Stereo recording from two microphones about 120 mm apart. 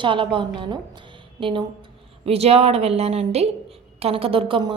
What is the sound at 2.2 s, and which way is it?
A woman's voice, 55° right (ahead or behind).